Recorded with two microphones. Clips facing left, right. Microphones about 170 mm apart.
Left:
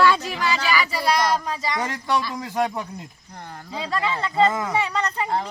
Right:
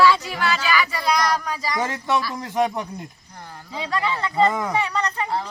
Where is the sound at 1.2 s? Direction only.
25° left (ahead or behind).